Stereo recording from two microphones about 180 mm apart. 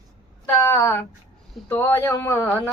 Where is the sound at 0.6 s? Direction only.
15° left (ahead or behind).